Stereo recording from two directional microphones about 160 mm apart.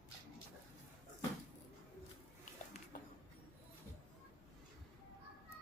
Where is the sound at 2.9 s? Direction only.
65° left (ahead or behind).